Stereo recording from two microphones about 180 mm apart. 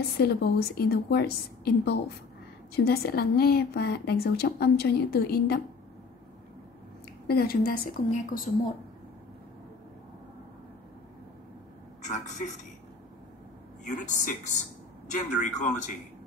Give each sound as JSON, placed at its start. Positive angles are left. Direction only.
{"t": 0.2, "sound": "a woman's voice", "side_deg": 60}
{"t": 7.2, "sound": "a woman's voice", "side_deg": 55}
{"t": 12.0, "sound": "a man's voice", "side_deg": 40}
{"t": 13.8, "sound": "a woman's voice", "side_deg": 45}